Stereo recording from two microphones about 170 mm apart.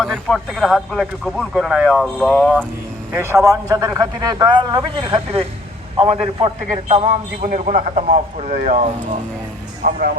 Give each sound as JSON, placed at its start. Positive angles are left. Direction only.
{"t": 0.0, "sound": "speech", "side_deg": 0}
{"t": 3.1, "sound": "a man's voice", "side_deg": -15}
{"t": 7.4, "sound": "speech", "side_deg": -50}
{"t": 9.8, "sound": "speech", "side_deg": -60}